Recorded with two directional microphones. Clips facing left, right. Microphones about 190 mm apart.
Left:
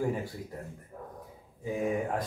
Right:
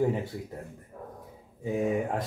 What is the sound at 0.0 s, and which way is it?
Speech, 25° right (ahead or behind).